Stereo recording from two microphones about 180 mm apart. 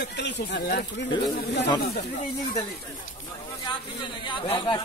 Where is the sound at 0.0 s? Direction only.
75° left (ahead or behind).